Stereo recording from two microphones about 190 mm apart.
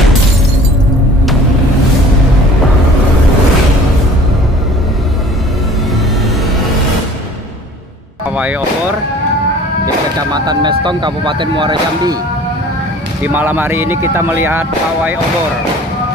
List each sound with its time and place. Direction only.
8.4 s speech: 5° right (ahead or behind)
10.3 s speech: 20° right (ahead or behind)
13.2 s speech: 10° right (ahead or behind)